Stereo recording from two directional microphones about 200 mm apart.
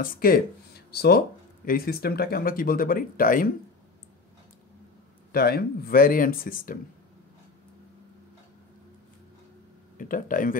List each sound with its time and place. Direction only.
0.0 s speech: 45° left (ahead or behind)
5.3 s speech: 50° left (ahead or behind)
9.9 s speech: 40° left (ahead or behind)